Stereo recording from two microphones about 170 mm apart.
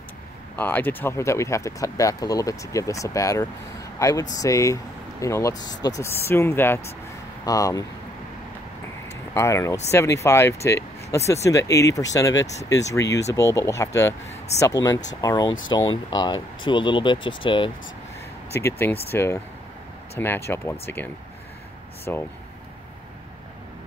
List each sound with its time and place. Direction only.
0.6 s speech: 10° left (ahead or behind)
9.3 s speech: 15° left (ahead or behind)
18.5 s speech: 15° left (ahead or behind)